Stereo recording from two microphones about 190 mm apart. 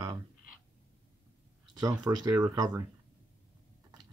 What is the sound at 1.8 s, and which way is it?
Speech, 20° right (ahead or behind).